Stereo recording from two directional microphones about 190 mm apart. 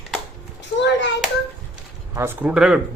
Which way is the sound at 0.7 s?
70° left (ahead or behind).